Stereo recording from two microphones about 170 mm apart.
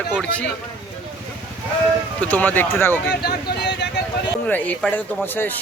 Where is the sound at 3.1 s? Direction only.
70° left (ahead or behind); by 3.9 s 85° left.